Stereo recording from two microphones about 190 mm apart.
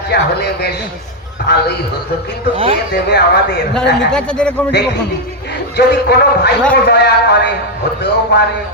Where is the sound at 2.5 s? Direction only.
30° right (ahead or behind).